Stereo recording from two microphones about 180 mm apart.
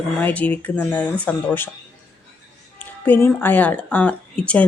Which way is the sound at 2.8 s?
10° left (ahead or behind).